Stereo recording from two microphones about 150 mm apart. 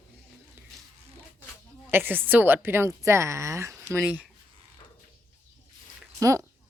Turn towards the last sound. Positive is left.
turn(degrees=-20)  # may be behind; listen again after turning